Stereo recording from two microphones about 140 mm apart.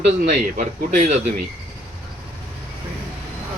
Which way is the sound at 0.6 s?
55° right (ahead or behind).